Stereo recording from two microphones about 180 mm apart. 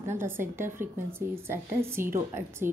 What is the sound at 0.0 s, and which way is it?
A woman's voice, 15° right (ahead or behind).